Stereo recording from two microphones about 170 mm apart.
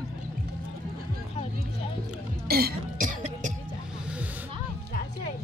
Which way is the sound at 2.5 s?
65° right (ahead or behind).